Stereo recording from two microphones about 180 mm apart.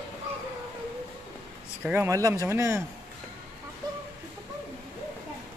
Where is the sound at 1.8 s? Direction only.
15° right (ahead or behind).